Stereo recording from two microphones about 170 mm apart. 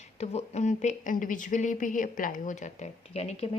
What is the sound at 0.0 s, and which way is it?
Speech, 40° left (ahead or behind).